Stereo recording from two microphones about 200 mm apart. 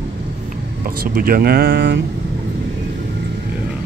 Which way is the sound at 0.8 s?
45° right (ahead or behind).